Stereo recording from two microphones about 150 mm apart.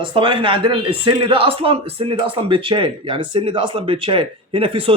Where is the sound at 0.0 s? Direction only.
35° right (ahead or behind).